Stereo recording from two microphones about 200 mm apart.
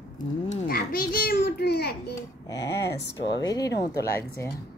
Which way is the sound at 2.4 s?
15° left (ahead or behind).